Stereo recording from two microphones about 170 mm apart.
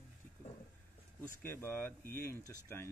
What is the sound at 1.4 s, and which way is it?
Speech, 10° left (ahead or behind).